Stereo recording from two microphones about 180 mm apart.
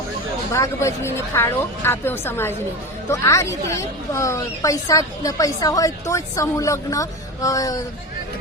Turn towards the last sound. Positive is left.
turn(degrees=20)  # may be behind; listen again after turning